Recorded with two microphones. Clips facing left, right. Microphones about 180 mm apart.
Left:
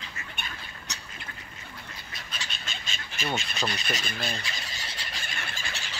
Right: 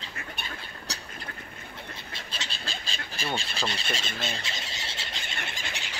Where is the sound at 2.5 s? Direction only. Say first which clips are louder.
Right 2 dB; 35° right (ahead or behind); by 5.9 s 20° right (ahead or behind).